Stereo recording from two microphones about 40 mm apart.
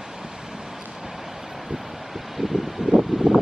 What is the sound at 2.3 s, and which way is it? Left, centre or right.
Wind, centre.